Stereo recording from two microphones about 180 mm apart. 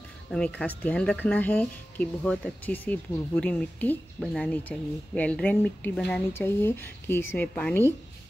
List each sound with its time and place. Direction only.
0.3 s speech: 5° left (ahead or behind)